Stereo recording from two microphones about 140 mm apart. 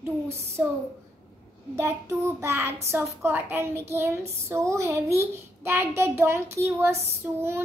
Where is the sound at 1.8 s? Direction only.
20° right (ahead or behind).